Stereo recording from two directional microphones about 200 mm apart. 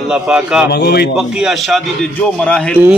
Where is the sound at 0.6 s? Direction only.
55° left (ahead or behind).